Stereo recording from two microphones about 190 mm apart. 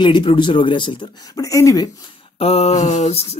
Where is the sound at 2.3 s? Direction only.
30° left (ahead or behind).